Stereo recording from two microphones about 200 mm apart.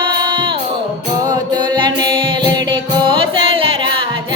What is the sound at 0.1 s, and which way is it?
Music, 25° right (ahead or behind).